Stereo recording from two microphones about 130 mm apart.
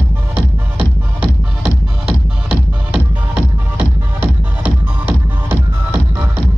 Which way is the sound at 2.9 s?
15° right (ahead or behind).